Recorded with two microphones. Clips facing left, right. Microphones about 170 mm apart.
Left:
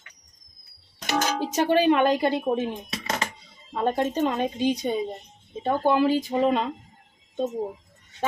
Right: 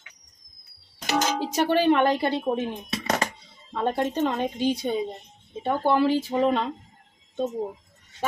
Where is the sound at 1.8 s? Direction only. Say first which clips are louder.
Left 1 dB; 10° left (ahead or behind).